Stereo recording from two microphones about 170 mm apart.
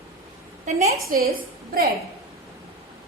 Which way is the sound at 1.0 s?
60° right (ahead or behind).